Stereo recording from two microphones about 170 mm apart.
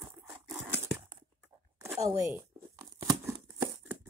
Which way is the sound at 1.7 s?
20° right (ahead or behind).